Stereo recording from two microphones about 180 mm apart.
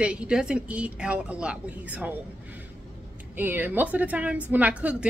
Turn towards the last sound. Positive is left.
turn(degrees=-10)  # may be behind; listen again after turning